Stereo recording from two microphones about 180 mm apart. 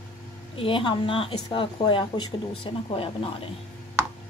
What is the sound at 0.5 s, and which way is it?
A woman's voice, 30° left (ahead or behind).